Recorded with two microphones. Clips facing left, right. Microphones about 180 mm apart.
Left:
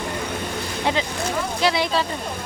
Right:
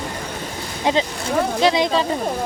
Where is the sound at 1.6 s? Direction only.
20° right (ahead or behind).